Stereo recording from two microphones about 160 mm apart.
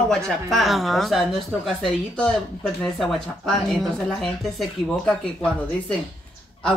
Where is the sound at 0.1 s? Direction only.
Centre (ahead or behind).